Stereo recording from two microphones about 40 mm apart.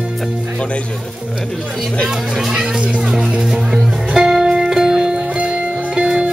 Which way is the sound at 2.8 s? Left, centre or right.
Right.